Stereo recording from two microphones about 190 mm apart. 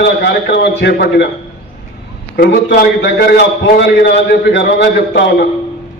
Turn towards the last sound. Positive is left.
turn(degrees=65)  # may be behind; listen again after turning